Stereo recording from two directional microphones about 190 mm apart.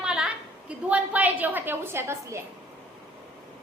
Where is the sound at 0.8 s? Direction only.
5° right (ahead or behind).